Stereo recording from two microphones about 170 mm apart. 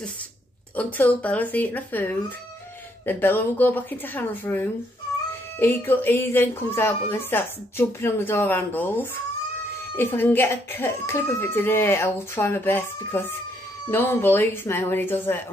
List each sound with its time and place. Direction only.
0.7 s speech: 10° left (ahead or behind)